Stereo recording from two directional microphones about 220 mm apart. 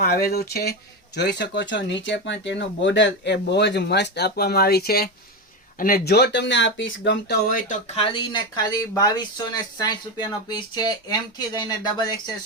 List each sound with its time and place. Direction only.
0.0 s speech: 45° left (ahead or behind); by 12.3 s 20° left (ahead or behind)